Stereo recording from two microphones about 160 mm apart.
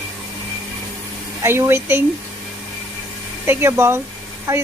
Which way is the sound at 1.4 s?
15° right (ahead or behind).